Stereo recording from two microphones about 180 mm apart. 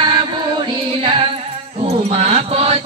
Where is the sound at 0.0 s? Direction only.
25° right (ahead or behind).